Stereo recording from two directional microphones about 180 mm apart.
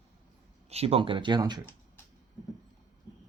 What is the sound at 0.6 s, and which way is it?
Speech, 35° right (ahead or behind).